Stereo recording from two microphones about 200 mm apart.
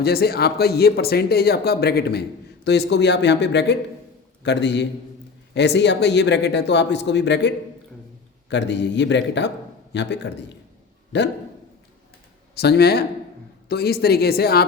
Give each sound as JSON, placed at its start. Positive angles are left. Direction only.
{"t": 0.0, "sound": "speech", "side_deg": 50}
{"t": 12.5, "sound": "speech", "side_deg": 55}